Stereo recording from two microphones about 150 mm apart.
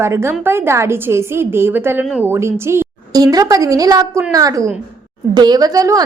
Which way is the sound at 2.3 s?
15° right (ahead or behind).